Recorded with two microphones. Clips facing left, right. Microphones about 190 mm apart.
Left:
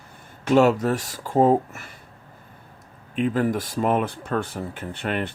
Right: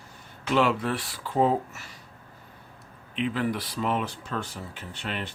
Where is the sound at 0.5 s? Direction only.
45° left (ahead or behind).